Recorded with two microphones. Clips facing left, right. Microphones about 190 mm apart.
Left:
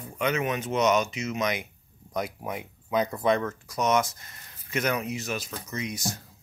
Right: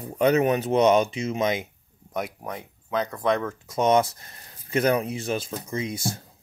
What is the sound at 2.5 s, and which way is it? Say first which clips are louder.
Speech: left 1 dB; 10° left (ahead or behind).